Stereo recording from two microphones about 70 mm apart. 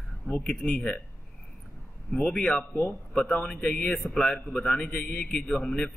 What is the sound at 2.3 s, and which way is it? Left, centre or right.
Speech, centre.